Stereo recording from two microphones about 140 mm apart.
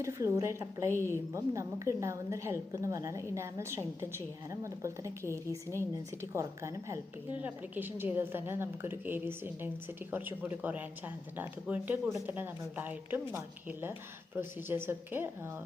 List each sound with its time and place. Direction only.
0.0 s a woman's voice: 20° right (ahead or behind)